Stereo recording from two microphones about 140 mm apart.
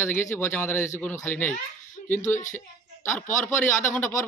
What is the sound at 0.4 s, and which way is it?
A man's voice, 15° left (ahead or behind).